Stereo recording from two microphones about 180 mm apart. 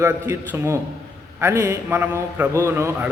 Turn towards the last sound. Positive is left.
turn(degrees=-10)  # may be behind; listen again after turning